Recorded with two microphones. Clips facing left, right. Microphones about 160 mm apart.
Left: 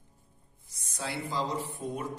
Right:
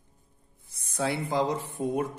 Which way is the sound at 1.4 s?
50° right (ahead or behind).